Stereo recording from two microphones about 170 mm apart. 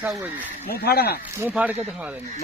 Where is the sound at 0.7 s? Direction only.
65° left (ahead or behind).